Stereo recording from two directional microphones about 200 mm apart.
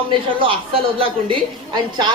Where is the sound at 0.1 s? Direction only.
25° right (ahead or behind).